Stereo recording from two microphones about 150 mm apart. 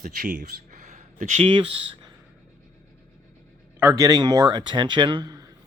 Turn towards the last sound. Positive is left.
turn(degrees=-30)  # may be behind; listen again after turning